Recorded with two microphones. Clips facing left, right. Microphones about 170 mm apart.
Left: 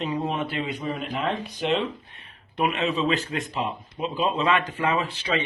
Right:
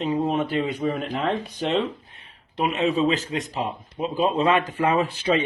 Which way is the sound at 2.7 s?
40° right (ahead or behind).